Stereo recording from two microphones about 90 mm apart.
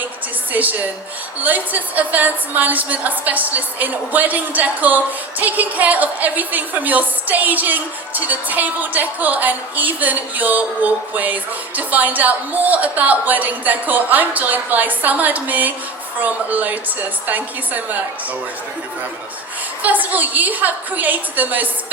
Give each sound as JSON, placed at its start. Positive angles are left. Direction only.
{"t": 0.5, "sound": "a woman's voice", "side_deg": -20}
{"t": 19.8, "sound": "a woman's voice", "side_deg": -20}